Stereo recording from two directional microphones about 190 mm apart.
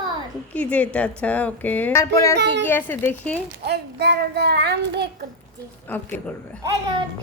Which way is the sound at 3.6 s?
60° right (ahead or behind).